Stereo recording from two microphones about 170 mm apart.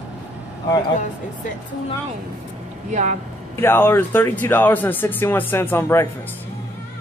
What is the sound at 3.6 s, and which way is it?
Speech, 15° left (ahead or behind).